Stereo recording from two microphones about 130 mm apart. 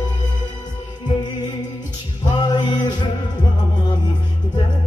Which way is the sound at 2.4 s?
35° left (ahead or behind).